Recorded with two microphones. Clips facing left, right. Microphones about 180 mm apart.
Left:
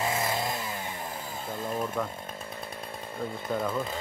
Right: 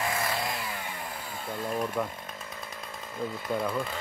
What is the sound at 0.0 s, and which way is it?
Chainsaw, 20° left (ahead or behind).